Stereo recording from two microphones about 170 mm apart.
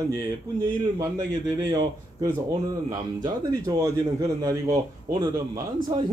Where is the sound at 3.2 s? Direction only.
20° right (ahead or behind).